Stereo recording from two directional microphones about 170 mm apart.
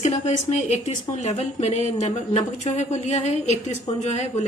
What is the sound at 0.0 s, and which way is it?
A woman's voice, 40° left (ahead or behind).